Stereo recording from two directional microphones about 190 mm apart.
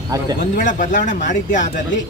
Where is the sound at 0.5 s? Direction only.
45° left (ahead or behind).